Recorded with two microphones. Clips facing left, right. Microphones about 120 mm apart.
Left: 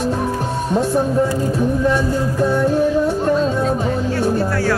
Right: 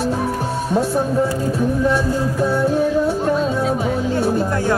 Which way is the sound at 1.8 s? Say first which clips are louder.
Left 1 dB; 5° right (ahead or behind).